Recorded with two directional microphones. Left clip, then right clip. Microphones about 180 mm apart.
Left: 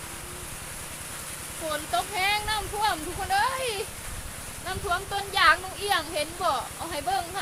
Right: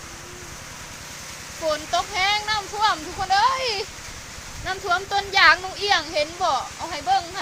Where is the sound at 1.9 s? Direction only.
10° right (ahead or behind).